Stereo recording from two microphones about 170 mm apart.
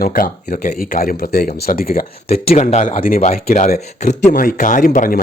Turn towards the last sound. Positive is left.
turn(degrees=55)  # may be behind; listen again after turning